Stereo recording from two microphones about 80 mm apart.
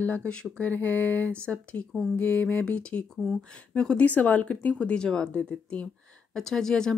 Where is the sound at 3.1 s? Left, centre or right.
Centre.